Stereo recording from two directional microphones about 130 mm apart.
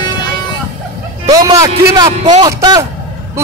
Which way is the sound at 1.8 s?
30° right (ahead or behind).